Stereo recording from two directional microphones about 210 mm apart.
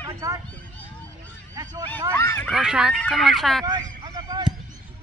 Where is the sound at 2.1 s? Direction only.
10° left (ahead or behind).